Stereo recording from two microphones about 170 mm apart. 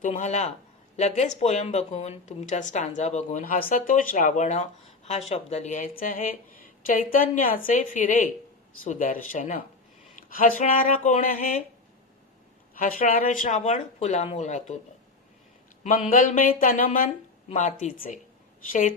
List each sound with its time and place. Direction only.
0.0 s a woman's voice: 45° left (ahead or behind)
12.8 s speech: 55° left (ahead or behind)
15.8 s speech: 50° left (ahead or behind)